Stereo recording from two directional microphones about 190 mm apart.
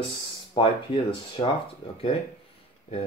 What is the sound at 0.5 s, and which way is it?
Speech, 25° left (ahead or behind).